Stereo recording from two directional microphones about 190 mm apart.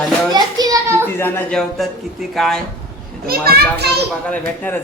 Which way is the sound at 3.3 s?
55° right (ahead or behind).